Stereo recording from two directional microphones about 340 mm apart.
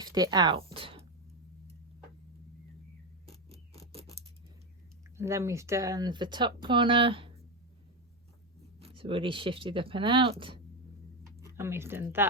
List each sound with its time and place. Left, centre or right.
0.0 s speech: centre
3.2 s a sound: centre
5.1 s speech: centre
8.8 s speech: centre